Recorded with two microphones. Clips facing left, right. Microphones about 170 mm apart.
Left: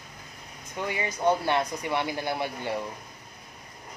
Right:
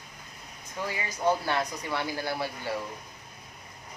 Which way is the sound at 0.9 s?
20° left (ahead or behind).